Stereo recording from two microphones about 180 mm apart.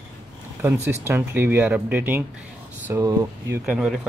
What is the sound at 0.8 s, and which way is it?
Speech, 10° right (ahead or behind).